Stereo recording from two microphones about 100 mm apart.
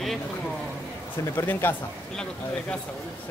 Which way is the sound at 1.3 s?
20° left (ahead or behind).